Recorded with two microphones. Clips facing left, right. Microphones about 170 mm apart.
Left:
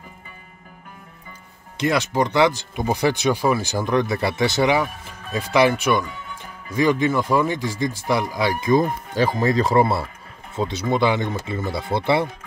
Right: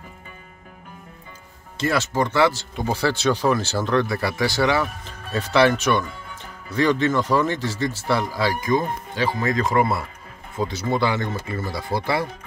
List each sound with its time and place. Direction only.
1.8 s speech: 15° left (ahead or behind)
8.6 s speech: 40° left (ahead or behind)